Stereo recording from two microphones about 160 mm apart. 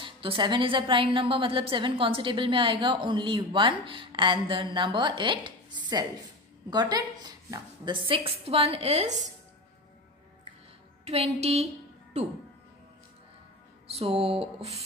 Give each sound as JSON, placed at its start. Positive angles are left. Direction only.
{"t": 0.0, "sound": "a woman's voice", "side_deg": -30}
{"t": 11.1, "sound": "a woman's voice", "side_deg": -40}
{"t": 13.9, "sound": "a woman's voice", "side_deg": -40}